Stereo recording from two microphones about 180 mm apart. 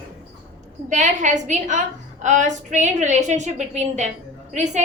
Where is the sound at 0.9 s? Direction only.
40° right (ahead or behind).